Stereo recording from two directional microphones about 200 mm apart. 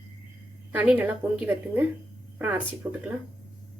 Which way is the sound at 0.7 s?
10° right (ahead or behind).